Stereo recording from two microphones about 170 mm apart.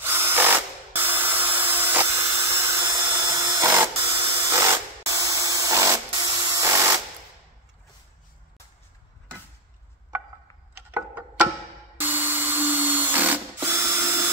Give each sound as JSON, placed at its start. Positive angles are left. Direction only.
{"t": 0.0, "sound": "tools", "side_deg": -15}
{"t": 10.9, "sound": "music", "side_deg": -10}
{"t": 12.0, "sound": "tools", "side_deg": -10}